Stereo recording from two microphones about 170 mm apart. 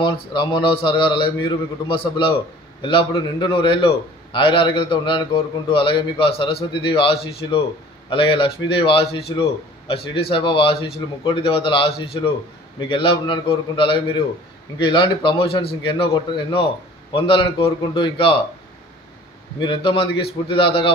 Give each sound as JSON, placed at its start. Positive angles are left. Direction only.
{"t": 0.0, "sound": "a man's voice", "side_deg": 30}
{"t": 19.6, "sound": "a man's voice", "side_deg": 30}